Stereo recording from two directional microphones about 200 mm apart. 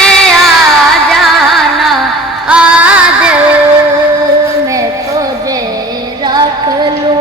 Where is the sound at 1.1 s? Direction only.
Centre (ahead or behind).